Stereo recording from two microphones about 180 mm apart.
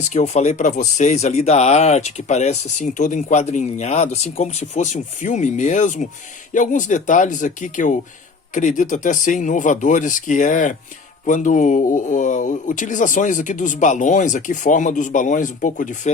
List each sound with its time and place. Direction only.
0.0 s speech: 40° left (ahead or behind)